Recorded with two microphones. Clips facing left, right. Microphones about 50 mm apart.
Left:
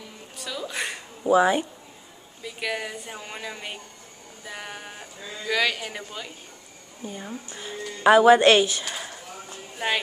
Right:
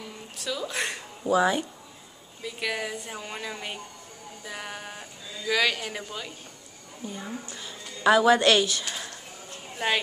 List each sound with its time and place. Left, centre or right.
0.4 s a woman's voice: centre
1.2 s speech: centre
2.4 s a woman's voice: centre
7.2 s a woman's voice: centre